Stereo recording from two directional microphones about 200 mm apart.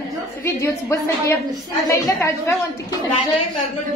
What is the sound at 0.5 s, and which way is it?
A woman's voice, 15° left (ahead or behind).